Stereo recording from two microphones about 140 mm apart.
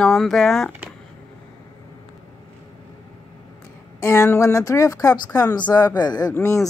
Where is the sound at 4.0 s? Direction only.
20° left (ahead or behind).